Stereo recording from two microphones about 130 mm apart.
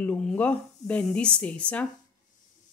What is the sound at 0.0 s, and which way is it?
Speech, 5° left (ahead or behind).